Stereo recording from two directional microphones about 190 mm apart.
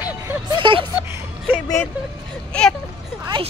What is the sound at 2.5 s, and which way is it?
Speech, 5° left (ahead or behind).